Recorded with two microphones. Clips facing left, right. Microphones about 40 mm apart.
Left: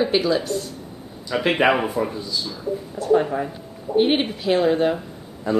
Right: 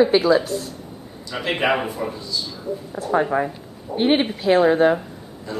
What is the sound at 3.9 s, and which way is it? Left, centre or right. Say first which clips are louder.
A woman's voice: even; centre.